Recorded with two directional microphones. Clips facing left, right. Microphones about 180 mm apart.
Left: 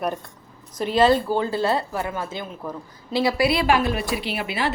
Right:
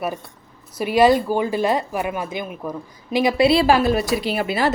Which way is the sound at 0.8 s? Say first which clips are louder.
Right 3 dB; 10° right (ahead or behind).